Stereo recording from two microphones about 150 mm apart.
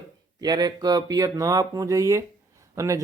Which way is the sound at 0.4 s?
25° right (ahead or behind).